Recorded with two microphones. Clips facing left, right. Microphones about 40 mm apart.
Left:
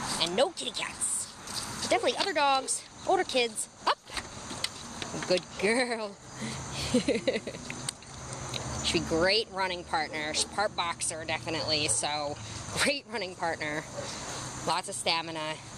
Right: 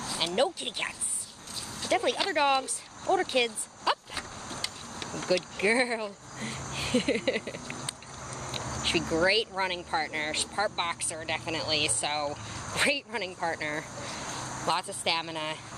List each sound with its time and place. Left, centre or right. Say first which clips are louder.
0.0 s a sound: left 1 dB; centre
0.6 s speech: right 2 dB; centre
1.5 s a sound: left 1 dB; right
1.9 s speech: even; centre
3.8 s vehicle: even; centre
5.1 s speech: right 1 dB; centre
5.6 s speech: right 2 dB; right
7.1 s speech: even; right
8.8 s speech: right 1 dB; right
10.5 s speech: even; centre
11.6 s speech: right 1 dB; right
13.5 s speech: right 1 dB; centre